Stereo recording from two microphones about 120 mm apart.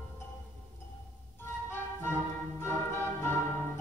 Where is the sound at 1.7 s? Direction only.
20° left (ahead or behind).